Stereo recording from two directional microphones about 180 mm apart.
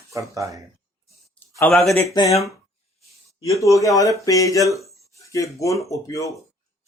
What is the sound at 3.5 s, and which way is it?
Speech, 15° left (ahead or behind).